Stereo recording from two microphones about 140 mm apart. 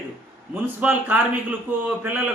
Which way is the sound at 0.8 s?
10° right (ahead or behind).